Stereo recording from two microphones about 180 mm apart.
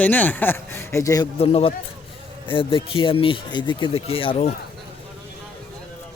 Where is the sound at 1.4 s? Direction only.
30° left (ahead or behind).